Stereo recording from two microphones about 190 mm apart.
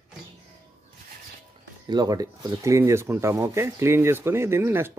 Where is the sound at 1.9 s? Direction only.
20° right (ahead or behind).